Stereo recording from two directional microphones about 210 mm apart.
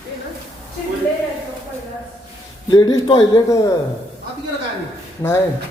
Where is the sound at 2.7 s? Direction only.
20° left (ahead or behind).